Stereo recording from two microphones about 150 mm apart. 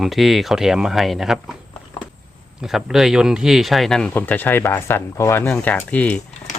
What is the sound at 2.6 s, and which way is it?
Speech, 5° right (ahead or behind).